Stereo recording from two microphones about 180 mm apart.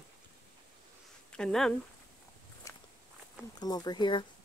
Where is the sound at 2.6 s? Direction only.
15° left (ahead or behind).